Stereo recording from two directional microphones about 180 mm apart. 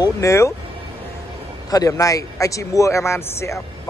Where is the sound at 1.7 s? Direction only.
20° left (ahead or behind).